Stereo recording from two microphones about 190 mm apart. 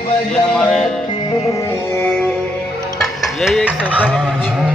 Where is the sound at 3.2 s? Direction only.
Centre (ahead or behind).